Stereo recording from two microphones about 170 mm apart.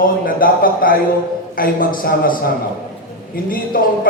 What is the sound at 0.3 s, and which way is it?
A man's voice, 55° left (ahead or behind).